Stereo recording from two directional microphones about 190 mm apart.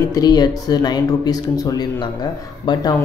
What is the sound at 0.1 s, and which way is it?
Speech, 20° left (ahead or behind).